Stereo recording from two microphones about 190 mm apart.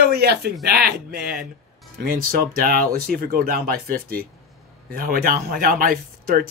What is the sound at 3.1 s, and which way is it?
Speech, 50° right (ahead or behind).